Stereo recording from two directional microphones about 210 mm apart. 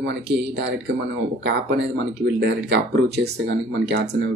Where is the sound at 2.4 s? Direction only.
55° right (ahead or behind).